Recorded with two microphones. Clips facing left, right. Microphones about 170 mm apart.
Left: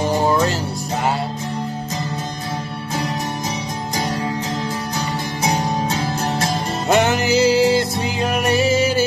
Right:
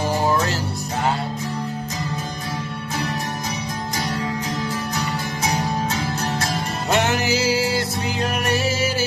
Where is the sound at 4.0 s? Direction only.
30° left (ahead or behind).